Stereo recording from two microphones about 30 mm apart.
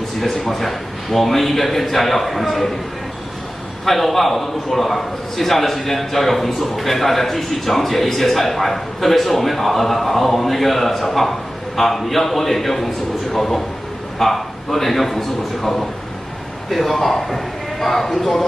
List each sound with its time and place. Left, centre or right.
0.2 s a man's voice: centre
3.8 s a man's voice: centre